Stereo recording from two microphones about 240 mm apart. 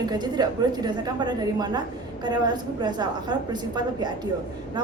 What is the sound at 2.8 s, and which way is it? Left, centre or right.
A woman's voice, centre.